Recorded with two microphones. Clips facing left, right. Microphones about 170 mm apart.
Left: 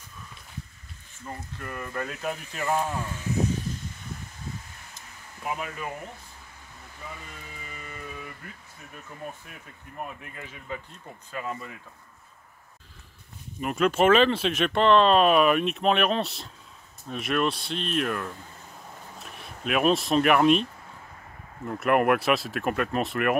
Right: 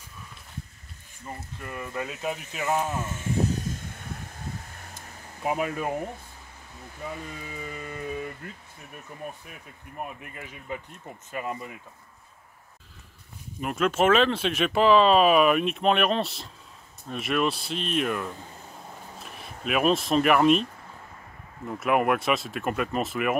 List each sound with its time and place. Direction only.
1.4 s speech: 5° right (ahead or behind)
2.9 s speech: 20° right (ahead or behind)
4.9 s a sound: 45° right (ahead or behind)
10.0 s speech: 10° right (ahead or behind)
13.6 s speech: centre (ahead or behind)
21.6 s speech: centre (ahead or behind)